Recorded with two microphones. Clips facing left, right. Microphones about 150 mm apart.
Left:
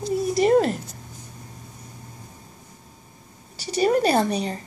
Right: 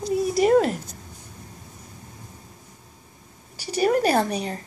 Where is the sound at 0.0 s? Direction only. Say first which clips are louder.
Even; centre (ahead or behind).